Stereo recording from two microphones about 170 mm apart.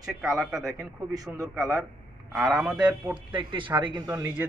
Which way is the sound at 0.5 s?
20° right (ahead or behind).